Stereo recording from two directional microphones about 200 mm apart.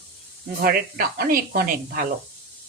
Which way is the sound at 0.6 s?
45° right (ahead or behind).